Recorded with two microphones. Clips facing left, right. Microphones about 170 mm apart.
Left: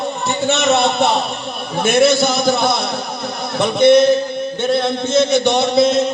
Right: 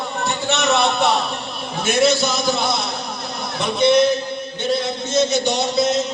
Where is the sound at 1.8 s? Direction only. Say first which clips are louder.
Left 4 dB; 55° left (ahead or behind).